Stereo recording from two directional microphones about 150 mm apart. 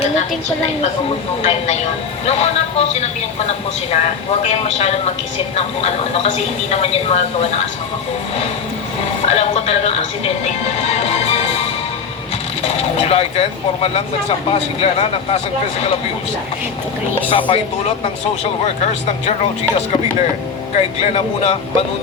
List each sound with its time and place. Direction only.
1.4 s speech: 45° left (ahead or behind)
6.3 s speech: 45° left (ahead or behind)
9.2 s speech: 45° left (ahead or behind)
12.6 s speech: 45° left (ahead or behind)
17.2 s speech: 35° left (ahead or behind)
20.7 s speech: 45° left (ahead or behind)